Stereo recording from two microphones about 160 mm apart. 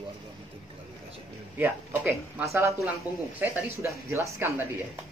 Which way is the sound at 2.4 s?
20° right (ahead or behind).